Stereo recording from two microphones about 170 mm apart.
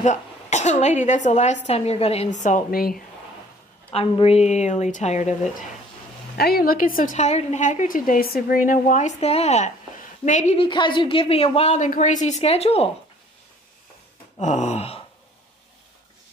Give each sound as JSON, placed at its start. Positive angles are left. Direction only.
{"t": 0.0, "sound": "a woman's voice", "side_deg": 45}
{"t": 3.9, "sound": "a woman's voice", "side_deg": 35}
{"t": 6.3, "sound": "a woman's voice", "side_deg": 65}
{"t": 10.6, "sound": "a woman's voice", "side_deg": 30}
{"t": 14.4, "sound": "a woman's voice", "side_deg": 45}